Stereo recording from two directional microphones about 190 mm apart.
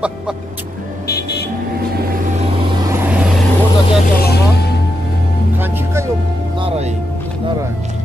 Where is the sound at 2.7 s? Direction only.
15° right (ahead or behind).